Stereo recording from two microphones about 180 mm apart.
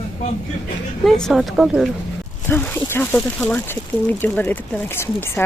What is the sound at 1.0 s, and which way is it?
Speech, centre (ahead or behind).